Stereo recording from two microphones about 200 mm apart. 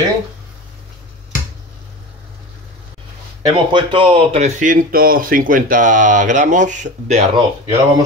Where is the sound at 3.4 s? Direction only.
25° right (ahead or behind).